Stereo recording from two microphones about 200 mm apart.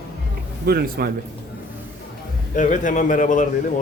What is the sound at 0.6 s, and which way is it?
Speech, 50° right (ahead or behind).